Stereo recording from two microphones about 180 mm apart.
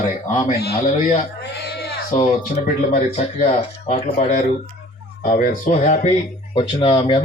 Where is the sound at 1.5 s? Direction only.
65° left (ahead or behind).